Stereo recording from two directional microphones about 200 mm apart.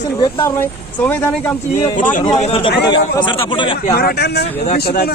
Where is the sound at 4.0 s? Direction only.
55° left (ahead or behind).